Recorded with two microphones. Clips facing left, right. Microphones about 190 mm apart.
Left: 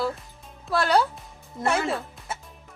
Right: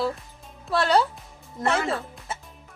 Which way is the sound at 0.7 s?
Centre (ahead or behind).